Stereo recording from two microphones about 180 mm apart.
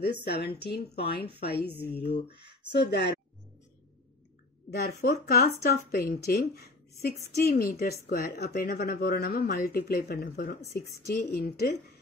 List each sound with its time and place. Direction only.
0.0 s speech: 65° left (ahead or behind)
4.8 s speech: 55° left (ahead or behind)